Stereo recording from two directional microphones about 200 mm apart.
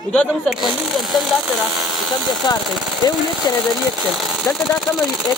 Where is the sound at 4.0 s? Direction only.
Centre (ahead or behind).